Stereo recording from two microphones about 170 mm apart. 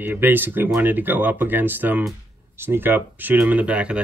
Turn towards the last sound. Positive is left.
turn(degrees=-5)  # may be behind; listen again after turning